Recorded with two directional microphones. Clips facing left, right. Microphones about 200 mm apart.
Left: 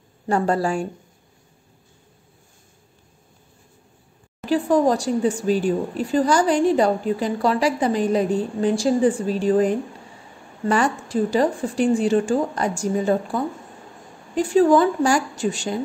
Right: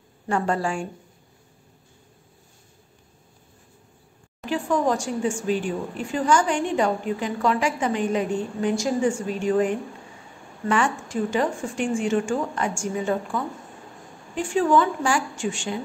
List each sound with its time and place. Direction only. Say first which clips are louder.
0.3 s a woman's voice: left 4 dB; 35° left (ahead or behind)
4.5 s a woman's voice: left 5 dB; 35° left (ahead or behind)